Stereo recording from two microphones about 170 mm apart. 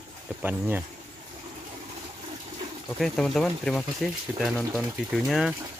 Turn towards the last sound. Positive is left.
turn(degrees=-5)  # may be behind; listen again after turning